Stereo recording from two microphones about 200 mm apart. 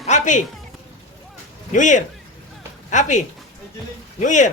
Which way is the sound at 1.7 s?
40° left (ahead or behind).